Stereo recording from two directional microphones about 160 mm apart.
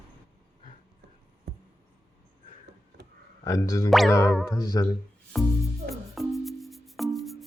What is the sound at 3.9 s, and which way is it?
Music, centre (ahead or behind).